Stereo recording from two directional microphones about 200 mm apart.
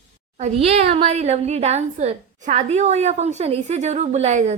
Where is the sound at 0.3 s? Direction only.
30° right (ahead or behind).